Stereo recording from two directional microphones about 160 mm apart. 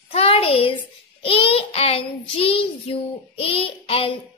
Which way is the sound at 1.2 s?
35° left (ahead or behind).